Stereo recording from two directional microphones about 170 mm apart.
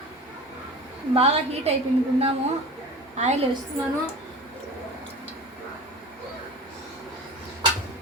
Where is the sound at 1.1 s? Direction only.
35° right (ahead or behind).